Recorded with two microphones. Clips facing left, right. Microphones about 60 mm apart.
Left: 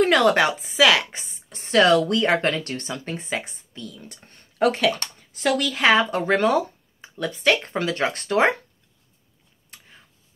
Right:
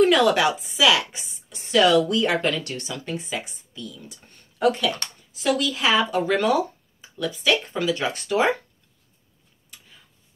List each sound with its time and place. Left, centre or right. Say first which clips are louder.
0.0 s speech: even; left
4.6 s speech: left 2 dB; left
5.3 s speech: left 1 dB; left